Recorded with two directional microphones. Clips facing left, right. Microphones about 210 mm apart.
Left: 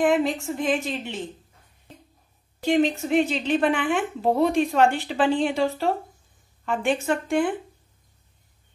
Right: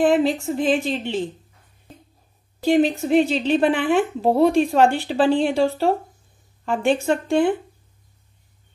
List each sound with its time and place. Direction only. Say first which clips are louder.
0.0 s speech: right 4 dB; 30° right (ahead or behind)
2.6 s speech: right 3 dB; 35° right (ahead or behind)